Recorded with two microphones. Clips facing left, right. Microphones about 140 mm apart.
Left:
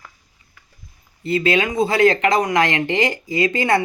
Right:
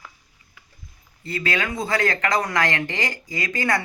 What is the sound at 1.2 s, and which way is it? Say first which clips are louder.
Speech: left 8 dB; 20° left (ahead or behind).